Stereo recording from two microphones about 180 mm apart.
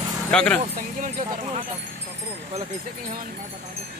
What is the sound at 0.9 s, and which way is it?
Speech, 45° right (ahead or behind).